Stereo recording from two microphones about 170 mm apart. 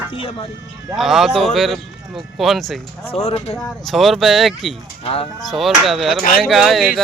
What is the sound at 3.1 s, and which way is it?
Speech, 35° left (ahead or behind).